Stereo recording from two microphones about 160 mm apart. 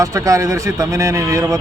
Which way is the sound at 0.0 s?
20° right (ahead or behind).